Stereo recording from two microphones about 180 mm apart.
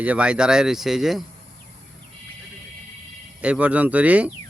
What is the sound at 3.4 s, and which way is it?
Speech, 5° right (ahead or behind).